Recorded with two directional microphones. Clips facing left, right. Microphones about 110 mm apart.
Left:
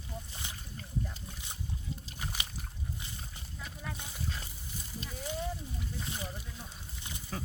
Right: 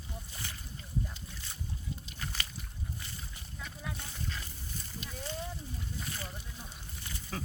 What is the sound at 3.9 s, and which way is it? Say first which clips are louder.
Speech: left 1 dB; 15° left (ahead or behind).